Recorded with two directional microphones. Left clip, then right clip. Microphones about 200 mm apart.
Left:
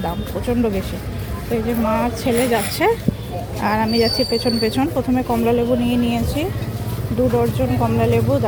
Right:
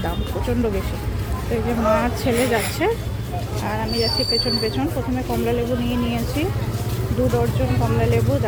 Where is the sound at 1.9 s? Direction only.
10° left (ahead or behind).